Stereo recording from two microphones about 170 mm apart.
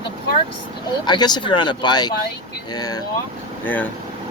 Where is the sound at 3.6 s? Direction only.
10° left (ahead or behind).